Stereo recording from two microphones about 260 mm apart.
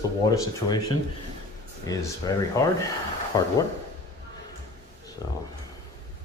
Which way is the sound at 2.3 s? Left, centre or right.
Centre.